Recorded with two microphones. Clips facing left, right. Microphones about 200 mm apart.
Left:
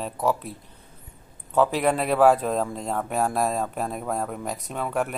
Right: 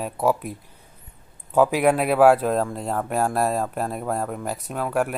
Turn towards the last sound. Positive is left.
turn(degrees=-5)  # may be behind; listen again after turning